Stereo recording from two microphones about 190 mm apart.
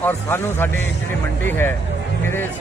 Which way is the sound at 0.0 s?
10° left (ahead or behind).